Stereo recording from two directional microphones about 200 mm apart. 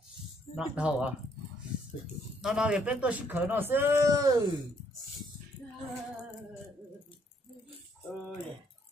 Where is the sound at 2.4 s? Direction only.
5° right (ahead or behind).